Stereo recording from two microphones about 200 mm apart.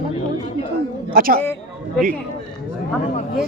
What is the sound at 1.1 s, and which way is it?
Speech, 45° right (ahead or behind).